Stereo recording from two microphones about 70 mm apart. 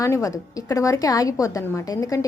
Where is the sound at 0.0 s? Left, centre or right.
Left.